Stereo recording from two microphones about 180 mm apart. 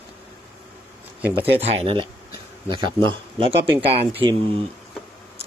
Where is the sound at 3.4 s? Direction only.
35° right (ahead or behind).